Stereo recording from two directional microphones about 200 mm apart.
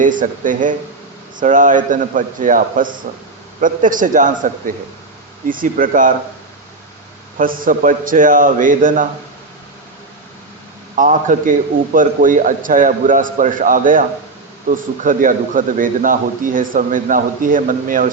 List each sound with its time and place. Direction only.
0.0 s a man's voice: 40° right (ahead or behind)
7.3 s a man's voice: 45° right (ahead or behind)
10.9 s a man's voice: 40° right (ahead or behind)